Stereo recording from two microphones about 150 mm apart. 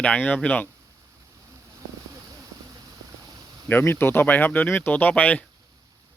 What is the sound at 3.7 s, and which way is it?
Speech, 15° left (ahead or behind).